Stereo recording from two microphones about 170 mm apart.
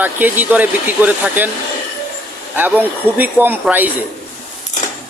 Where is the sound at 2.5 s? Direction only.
10° right (ahead or behind).